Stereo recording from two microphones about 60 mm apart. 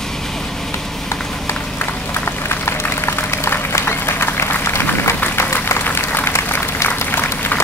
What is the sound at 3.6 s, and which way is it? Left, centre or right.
Applause, left.